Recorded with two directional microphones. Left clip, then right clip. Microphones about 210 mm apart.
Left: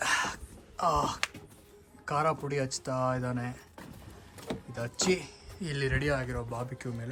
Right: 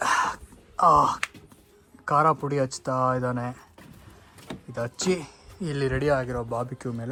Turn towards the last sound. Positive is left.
turn(degrees=0)  # may be behind; listen again after turning